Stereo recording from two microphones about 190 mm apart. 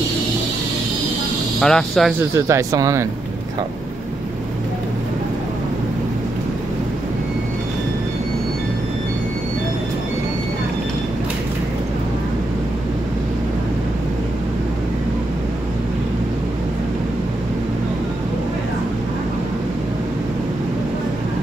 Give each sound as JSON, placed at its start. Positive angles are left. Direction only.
{"t": 1.6, "sound": "speech", "side_deg": 5}
{"t": 2.1, "sound": "speech", "side_deg": -15}